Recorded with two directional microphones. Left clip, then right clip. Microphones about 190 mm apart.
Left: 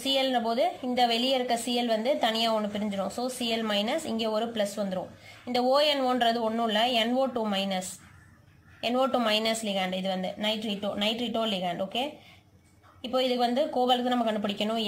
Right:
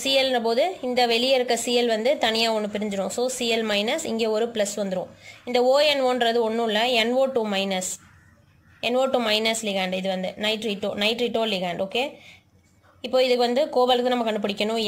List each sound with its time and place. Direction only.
0.0 s a woman's voice: 35° right (ahead or behind)
8.8 s a woman's voice: 30° right (ahead or behind)